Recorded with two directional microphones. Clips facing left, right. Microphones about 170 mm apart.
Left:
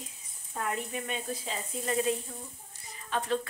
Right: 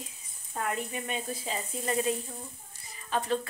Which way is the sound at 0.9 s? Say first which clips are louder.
Even; 5° right (ahead or behind).